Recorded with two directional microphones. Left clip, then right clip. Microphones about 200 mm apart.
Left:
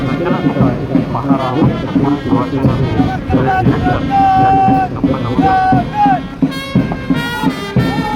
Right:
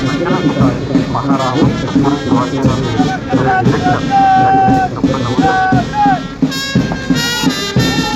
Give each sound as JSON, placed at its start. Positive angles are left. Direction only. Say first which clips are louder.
{"t": 2.3, "sound": "music", "louder": "right 1 dB", "side_deg": -35}
{"t": 6.7, "sound": "music", "louder": "right 1 dB", "side_deg": -25}